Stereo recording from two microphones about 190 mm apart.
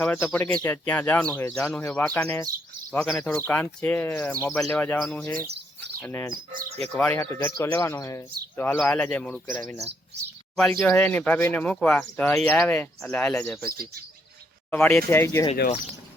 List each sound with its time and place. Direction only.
0.0 s speech: 5° left (ahead or behind)
1.5 s speech: 5° left (ahead or behind)
14.7 s speech: 10° left (ahead or behind)